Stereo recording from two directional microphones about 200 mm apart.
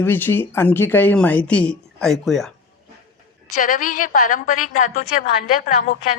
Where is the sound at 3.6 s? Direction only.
40° left (ahead or behind).